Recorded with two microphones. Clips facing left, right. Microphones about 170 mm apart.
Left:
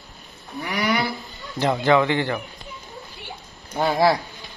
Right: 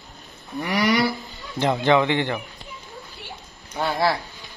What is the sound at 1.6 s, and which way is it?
Speech, 20° right (ahead or behind).